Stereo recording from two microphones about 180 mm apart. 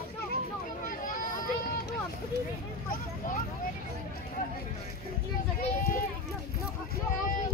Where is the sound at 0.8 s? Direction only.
50° left (ahead or behind).